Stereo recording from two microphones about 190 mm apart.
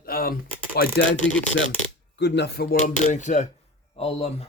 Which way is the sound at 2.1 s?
65° left (ahead or behind).